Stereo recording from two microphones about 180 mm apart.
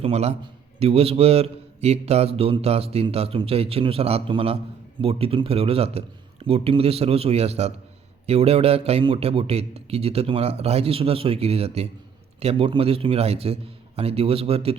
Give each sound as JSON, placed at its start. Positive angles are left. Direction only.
{"t": 0.0, "sound": "a man's voice", "side_deg": -35}